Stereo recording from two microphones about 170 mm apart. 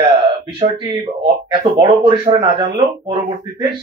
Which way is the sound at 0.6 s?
30° right (ahead or behind).